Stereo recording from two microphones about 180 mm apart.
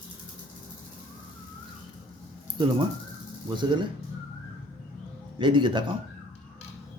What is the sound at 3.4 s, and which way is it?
Speech, 25° right (ahead or behind).